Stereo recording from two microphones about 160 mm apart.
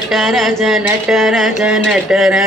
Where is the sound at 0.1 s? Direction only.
Centre (ahead or behind).